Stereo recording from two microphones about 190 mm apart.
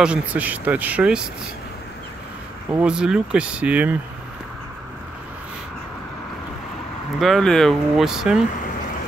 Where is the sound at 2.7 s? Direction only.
5° right (ahead or behind).